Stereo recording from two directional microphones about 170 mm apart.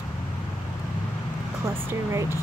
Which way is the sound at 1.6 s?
15° right (ahead or behind).